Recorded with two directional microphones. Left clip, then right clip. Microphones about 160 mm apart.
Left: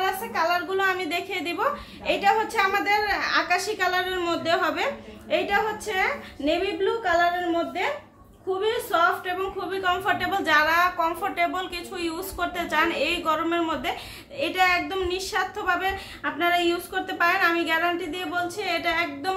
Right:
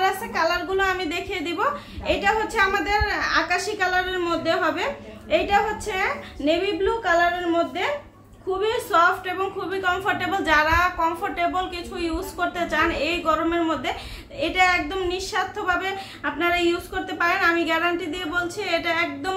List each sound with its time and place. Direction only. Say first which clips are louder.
0.0 s a woman's voice: right 3 dB; centre (ahead or behind)
8.5 s a woman's voice: right 3 dB; centre (ahead or behind)